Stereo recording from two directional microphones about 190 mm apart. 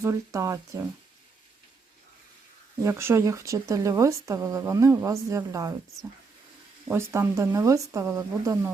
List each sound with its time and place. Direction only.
0.0 s speech: 15° right (ahead or behind)
2.8 s speech: 15° right (ahead or behind)
6.8 s speech: 15° right (ahead or behind)